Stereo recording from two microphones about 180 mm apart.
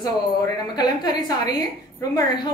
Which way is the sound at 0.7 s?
20° left (ahead or behind).